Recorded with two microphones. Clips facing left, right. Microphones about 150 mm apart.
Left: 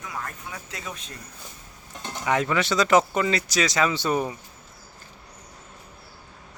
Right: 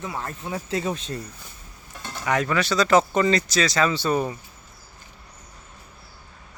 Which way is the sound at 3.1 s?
5° left (ahead or behind).